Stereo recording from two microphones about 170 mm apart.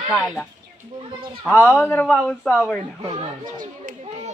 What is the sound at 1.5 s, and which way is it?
Speech, 10° left (ahead or behind).